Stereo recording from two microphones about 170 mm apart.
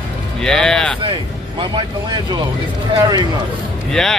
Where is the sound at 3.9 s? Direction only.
5° left (ahead or behind).